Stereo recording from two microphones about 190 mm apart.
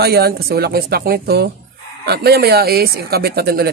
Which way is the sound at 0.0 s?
55° right (ahead or behind).